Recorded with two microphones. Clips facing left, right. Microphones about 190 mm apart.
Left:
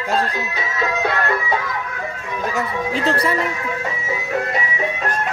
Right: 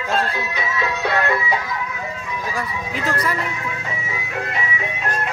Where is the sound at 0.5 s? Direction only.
45° left (ahead or behind).